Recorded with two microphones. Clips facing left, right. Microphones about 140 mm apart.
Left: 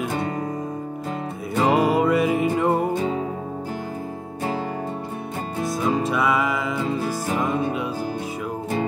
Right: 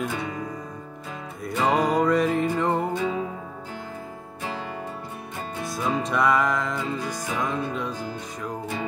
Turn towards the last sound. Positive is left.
turn(degrees=5)  # may be behind; listen again after turning